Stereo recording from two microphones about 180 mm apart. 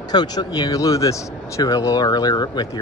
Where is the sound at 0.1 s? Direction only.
25° left (ahead or behind).